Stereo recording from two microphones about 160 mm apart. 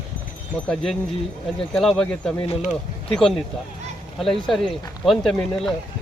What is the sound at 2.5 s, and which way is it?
Speech, 40° left (ahead or behind).